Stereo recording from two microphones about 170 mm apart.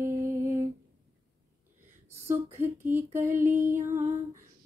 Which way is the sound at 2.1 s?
15° right (ahead or behind).